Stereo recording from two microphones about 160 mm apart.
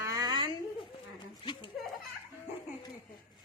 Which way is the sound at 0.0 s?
25° right (ahead or behind).